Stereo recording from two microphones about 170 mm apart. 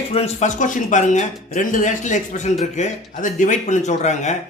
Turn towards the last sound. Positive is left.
turn(degrees=45)  # may be behind; listen again after turning